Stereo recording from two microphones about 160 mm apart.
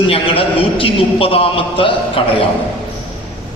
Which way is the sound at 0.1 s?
35° left (ahead or behind).